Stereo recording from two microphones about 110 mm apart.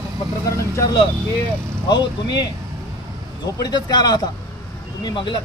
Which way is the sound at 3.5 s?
35° left (ahead or behind).